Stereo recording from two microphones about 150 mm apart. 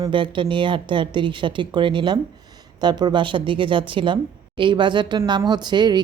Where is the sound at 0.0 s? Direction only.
35° right (ahead or behind).